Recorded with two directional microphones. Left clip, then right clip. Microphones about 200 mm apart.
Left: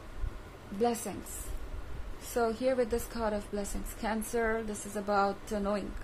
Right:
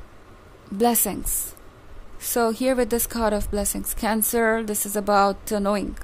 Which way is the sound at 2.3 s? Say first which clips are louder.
Right 8 dB; 55° right (ahead or behind).